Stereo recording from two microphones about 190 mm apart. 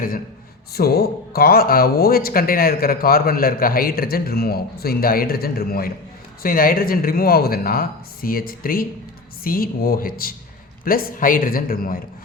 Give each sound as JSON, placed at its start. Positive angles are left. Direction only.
{"t": 0.7, "sound": "speech", "side_deg": 55}